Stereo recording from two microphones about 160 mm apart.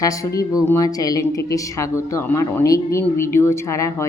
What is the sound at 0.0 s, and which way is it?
Speech, 20° left (ahead or behind).